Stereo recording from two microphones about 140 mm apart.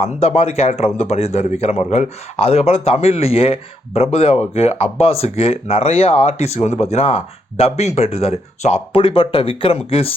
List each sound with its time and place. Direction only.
0.0 s speech: 45° left (ahead or behind)